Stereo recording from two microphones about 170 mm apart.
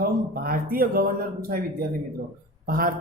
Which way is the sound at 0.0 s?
60° right (ahead or behind).